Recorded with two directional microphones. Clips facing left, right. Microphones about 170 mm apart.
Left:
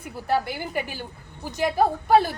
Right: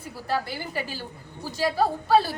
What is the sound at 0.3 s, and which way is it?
A woman's voice, 15° left (ahead or behind).